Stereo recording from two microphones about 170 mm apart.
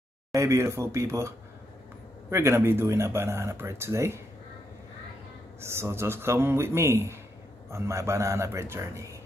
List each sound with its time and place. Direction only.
0.3 s speech: 20° right (ahead or behind)
5.6 s speech: 15° right (ahead or behind)